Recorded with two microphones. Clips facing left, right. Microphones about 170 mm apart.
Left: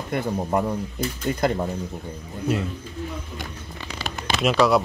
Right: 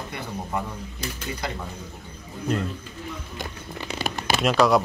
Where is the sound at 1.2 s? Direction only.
50° left (ahead or behind).